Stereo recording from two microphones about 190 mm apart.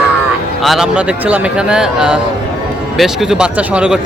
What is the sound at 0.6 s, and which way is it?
Speech, centre (ahead or behind).